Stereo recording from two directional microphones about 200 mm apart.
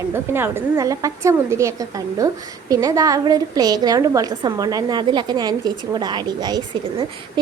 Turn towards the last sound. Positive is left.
turn(degrees=-20)  # may be behind; listen again after turning